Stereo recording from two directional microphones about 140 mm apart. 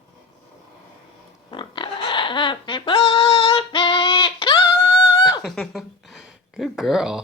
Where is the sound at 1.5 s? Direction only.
35° left (ahead or behind).